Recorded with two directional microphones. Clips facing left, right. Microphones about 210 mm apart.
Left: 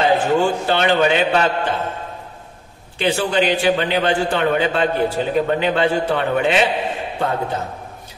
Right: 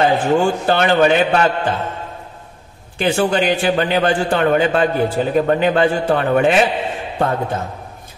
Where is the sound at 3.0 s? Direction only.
45° right (ahead or behind).